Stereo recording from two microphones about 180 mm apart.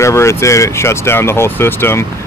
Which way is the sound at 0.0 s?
15° left (ahead or behind).